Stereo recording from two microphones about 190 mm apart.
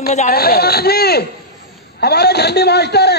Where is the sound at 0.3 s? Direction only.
55° left (ahead or behind).